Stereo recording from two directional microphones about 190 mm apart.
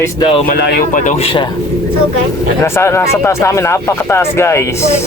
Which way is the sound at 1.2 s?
30° left (ahead or behind).